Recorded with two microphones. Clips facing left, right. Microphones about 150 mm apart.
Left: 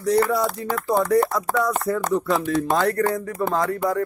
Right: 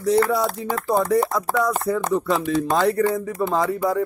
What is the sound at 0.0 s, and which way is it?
Speech, centre (ahead or behind).